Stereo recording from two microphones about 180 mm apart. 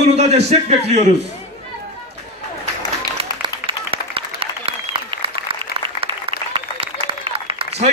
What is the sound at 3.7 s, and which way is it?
Applause, 30° right (ahead or behind).